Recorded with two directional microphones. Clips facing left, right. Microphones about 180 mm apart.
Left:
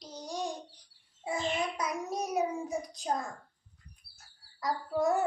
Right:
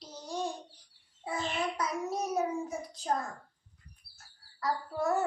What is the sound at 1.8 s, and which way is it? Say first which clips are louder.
Child singing: right 1 dB; 15° left (ahead or behind).